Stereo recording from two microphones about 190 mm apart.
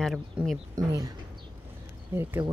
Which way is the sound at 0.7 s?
15° right (ahead or behind).